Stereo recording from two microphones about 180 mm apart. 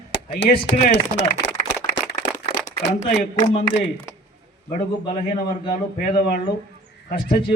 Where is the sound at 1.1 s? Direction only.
80° left.